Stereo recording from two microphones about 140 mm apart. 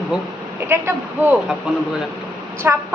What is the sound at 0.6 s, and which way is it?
Speech, 15° right (ahead or behind).